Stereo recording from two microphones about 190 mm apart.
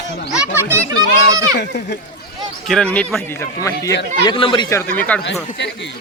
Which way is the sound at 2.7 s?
5° left (ahead or behind).